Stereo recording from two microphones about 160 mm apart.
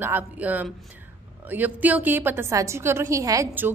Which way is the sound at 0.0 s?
10° right (ahead or behind).